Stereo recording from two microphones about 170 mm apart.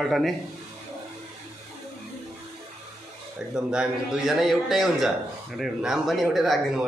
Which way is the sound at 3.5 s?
5° right (ahead or behind).